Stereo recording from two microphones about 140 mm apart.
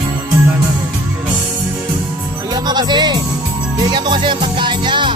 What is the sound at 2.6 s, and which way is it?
Music, 30° right (ahead or behind).